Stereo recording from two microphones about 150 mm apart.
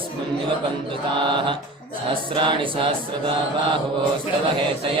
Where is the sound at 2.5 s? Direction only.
35° right (ahead or behind).